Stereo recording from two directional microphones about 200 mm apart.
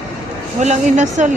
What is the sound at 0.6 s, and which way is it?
Speech, 35° right (ahead or behind).